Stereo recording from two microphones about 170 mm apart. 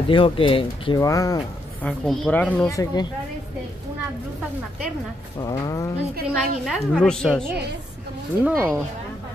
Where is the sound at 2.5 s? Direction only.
20° left (ahead or behind).